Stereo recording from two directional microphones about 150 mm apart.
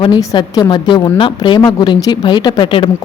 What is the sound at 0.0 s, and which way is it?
A woman's voice, 25° left (ahead or behind).